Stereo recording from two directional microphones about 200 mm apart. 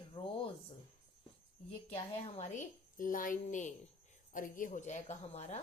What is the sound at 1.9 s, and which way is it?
Speech, 35° left (ahead or behind).